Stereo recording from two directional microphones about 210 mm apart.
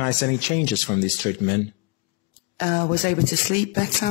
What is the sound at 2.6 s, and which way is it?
Speech, 40° left (ahead or behind).